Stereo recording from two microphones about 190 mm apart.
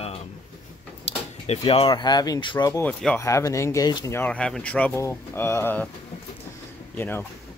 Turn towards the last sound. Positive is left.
turn(degrees=10)  # may be behind; listen again after turning